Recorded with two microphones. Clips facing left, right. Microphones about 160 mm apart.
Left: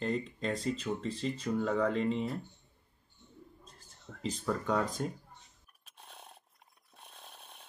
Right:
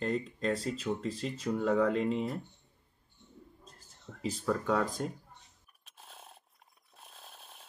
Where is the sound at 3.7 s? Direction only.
Centre (ahead or behind).